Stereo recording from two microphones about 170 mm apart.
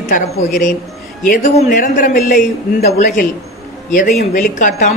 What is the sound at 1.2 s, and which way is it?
A man's voice, 50° left (ahead or behind).